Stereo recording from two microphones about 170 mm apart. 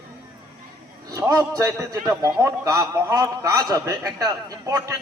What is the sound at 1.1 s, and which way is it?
A man's voice, 20° right (ahead or behind).